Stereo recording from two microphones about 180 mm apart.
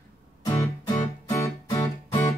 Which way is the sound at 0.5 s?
20° left (ahead or behind).